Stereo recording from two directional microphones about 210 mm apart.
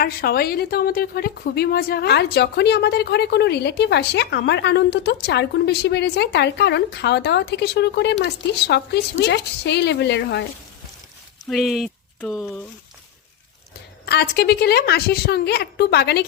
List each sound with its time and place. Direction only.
0.0 s a woman's voice: 45° left (ahead or behind)
11.4 s speech: centre (ahead or behind)
14.0 s a woman's voice: 50° left (ahead or behind)